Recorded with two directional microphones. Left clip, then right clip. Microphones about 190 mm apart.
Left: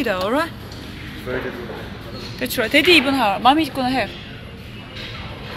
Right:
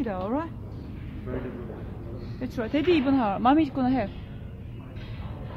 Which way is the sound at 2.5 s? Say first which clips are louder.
Left 12 dB; 5° left (ahead or behind).